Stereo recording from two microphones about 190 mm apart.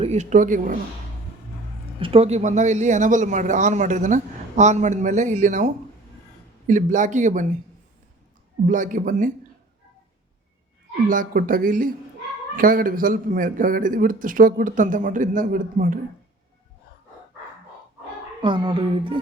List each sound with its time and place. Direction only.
0.0 s a man's voice: 35° right (ahead or behind)
2.0 s a man's voice: 30° right (ahead or behind)
6.7 s a man's voice: 40° right (ahead or behind)
8.6 s a man's voice: 45° right (ahead or behind)
11.1 s a man's voice: 45° right (ahead or behind)
18.4 s speech: 25° right (ahead or behind)